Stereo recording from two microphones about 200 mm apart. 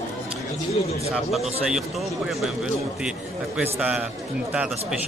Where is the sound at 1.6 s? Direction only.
Centre (ahead or behind).